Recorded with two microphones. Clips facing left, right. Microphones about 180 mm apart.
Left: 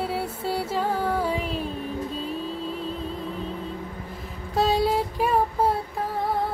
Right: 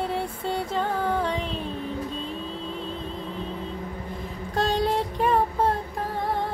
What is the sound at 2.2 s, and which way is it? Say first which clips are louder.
Vehicle: left 3 dB; 5° left (ahead or behind).